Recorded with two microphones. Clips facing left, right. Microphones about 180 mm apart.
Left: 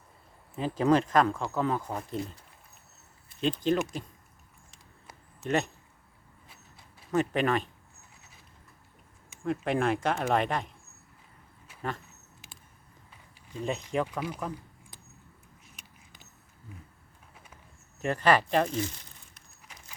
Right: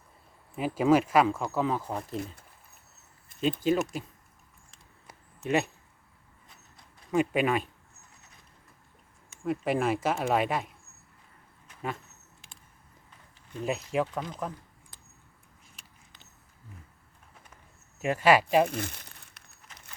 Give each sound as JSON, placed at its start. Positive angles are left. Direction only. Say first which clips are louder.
{"t": 0.5, "sound": "speech", "louder": "right 1 dB", "side_deg": -10}
{"t": 3.4, "sound": "speech", "louder": "right 1 dB", "side_deg": -5}
{"t": 5.4, "sound": "speech", "louder": "right 1 dB", "side_deg": -5}
{"t": 7.1, "sound": "speech", "louder": "right 1 dB", "side_deg": -10}
{"t": 9.4, "sound": "speech", "louder": "even", "side_deg": -5}
{"t": 11.7, "sound": "a sound", "louder": "even", "side_deg": 10}
{"t": 13.7, "sound": "speech", "louder": "right 1 dB", "side_deg": -5}
{"t": 14.1, "sound": "speech", "louder": "left 1 dB", "side_deg": 10}
{"t": 15.7, "sound": "a sound", "louder": "left 2 dB", "side_deg": 20}
{"t": 18.0, "sound": "speech", "louder": "right 2 dB", "side_deg": -5}
{"t": 18.7, "sound": "crumpling", "louder": "left 3 dB", "side_deg": -60}